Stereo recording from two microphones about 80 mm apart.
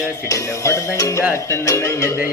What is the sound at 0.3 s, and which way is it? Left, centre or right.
Speech, left.